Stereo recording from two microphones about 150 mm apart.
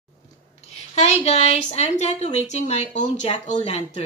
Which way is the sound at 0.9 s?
45° left (ahead or behind).